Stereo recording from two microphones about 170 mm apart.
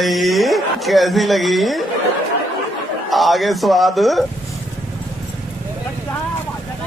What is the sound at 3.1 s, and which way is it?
Speech, centre (ahead or behind).